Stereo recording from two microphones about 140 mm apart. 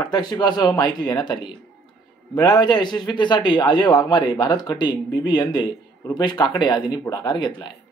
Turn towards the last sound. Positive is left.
turn(degrees=30)  # may be behind; listen again after turning